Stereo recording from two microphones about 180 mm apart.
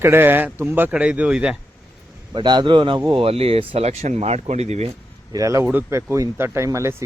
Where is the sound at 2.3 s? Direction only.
25° right (ahead or behind).